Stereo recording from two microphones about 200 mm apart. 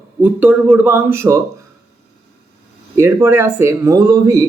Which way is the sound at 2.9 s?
15° right (ahead or behind).